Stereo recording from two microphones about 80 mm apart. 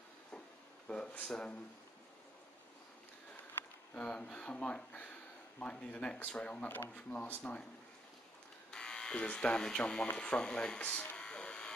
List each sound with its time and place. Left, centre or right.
0.8 s speech: centre
3.9 s speech: centre
8.6 s speech: centre